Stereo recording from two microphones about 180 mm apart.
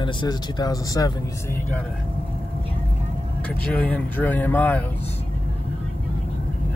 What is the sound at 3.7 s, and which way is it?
Speech, 10° left (ahead or behind).